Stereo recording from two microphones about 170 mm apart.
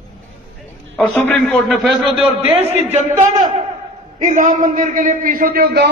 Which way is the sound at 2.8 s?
45° right (ahead or behind).